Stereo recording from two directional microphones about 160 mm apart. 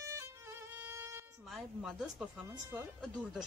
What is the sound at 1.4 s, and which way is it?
Speech, centre (ahead or behind).